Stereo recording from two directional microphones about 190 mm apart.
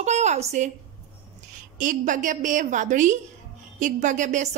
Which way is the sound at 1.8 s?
45° right (ahead or behind).